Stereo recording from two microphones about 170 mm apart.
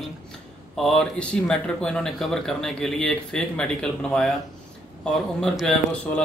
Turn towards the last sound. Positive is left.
turn(degrees=5)  # may be behind; listen again after turning